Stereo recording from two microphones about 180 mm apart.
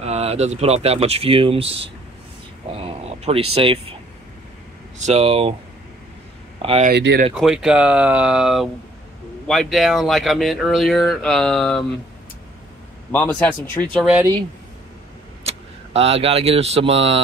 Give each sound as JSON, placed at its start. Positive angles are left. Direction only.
{"t": 0.0, "sound": "speech", "side_deg": -35}
{"t": 4.9, "sound": "speech", "side_deg": -35}
{"t": 6.6, "sound": "speech", "side_deg": -35}
{"t": 6.9, "sound": "speech", "side_deg": -65}
{"t": 7.3, "sound": "speech", "side_deg": -5}
{"t": 13.1, "sound": "a man's voice", "side_deg": 10}
{"t": 15.4, "sound": "speech", "side_deg": -35}